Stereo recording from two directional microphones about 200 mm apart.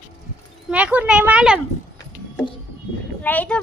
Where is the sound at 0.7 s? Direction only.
5° right (ahead or behind).